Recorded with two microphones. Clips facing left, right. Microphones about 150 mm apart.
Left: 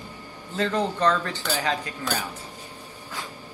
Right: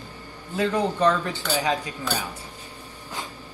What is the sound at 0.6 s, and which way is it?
A man's voice, 10° right (ahead or behind).